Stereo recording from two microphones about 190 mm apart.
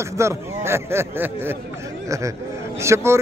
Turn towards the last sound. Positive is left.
turn(degrees=-15)  # may be behind; listen again after turning